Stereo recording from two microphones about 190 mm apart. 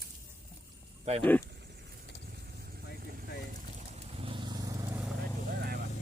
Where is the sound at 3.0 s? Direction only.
50° right (ahead or behind).